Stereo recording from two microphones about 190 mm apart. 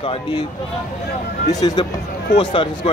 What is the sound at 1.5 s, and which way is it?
Speech, 20° left (ahead or behind).